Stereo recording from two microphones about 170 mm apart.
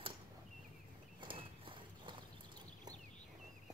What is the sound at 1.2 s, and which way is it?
Horse, 30° right (ahead or behind).